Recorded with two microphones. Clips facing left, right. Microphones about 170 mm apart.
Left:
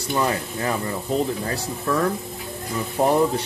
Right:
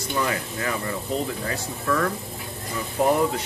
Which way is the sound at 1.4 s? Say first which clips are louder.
Left 1 dB; 30° left (ahead or behind).